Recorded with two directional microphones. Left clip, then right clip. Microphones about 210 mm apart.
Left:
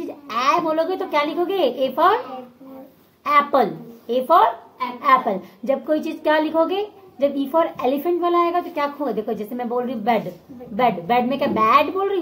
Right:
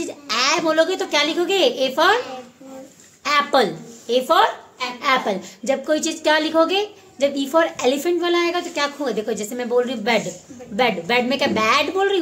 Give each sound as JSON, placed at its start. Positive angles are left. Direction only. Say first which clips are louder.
{"t": 0.0, "sound": "a child's voice", "louder": "even", "side_deg": -35}
{"t": 3.3, "sound": "a woman's voice", "louder": "left 1 dB", "side_deg": -35}